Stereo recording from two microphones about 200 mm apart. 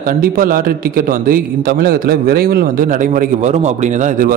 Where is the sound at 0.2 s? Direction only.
45° right (ahead or behind).